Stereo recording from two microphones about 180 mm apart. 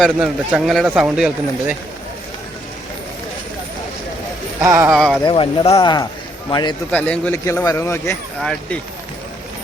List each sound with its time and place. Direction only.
0.0 s speech: centre (ahead or behind)
4.6 s speech: 15° right (ahead or behind)
4.9 s speech: 5° left (ahead or behind)
5.2 s speech: 30° left (ahead or behind)
6.9 s speech: 10° left (ahead or behind)
8.4 s speech: 5° left (ahead or behind)